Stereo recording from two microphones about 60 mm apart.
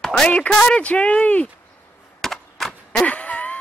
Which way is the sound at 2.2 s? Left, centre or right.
Centre.